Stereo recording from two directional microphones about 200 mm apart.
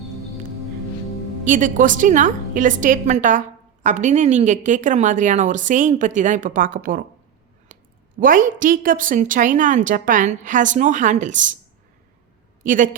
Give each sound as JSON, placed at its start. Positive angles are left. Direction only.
{"t": 1.5, "sound": "a woman's voice", "side_deg": -40}
{"t": 7.7, "sound": "a sound", "side_deg": -45}
{"t": 8.2, "sound": "a woman's voice", "side_deg": -40}
{"t": 12.6, "sound": "a woman's voice", "side_deg": -40}